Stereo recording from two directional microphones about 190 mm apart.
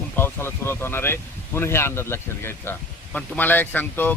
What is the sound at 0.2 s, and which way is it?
Speech, 10° left (ahead or behind).